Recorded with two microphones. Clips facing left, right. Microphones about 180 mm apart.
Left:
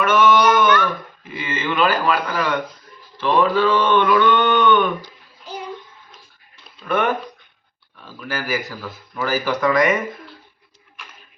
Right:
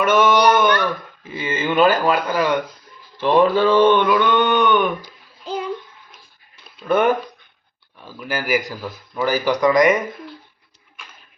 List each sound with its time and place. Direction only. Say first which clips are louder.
0.0 s a sound: even; 20° right (ahead or behind)
0.3 s a sound: even; 35° right (ahead or behind)
1.3 s speech: right 3 dB; 25° right (ahead or behind)
3.8 s mantra: right 1 dB; 15° right (ahead or behind)
6.8 s speech: right 4 dB; 20° right (ahead or behind)
8.0 s mantra: right 2 dB; 15° right (ahead or behind)